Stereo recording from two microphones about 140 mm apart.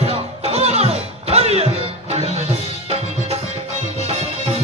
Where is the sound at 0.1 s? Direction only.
45° right (ahead or behind).